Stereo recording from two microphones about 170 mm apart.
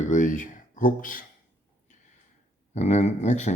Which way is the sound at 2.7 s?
40° left (ahead or behind).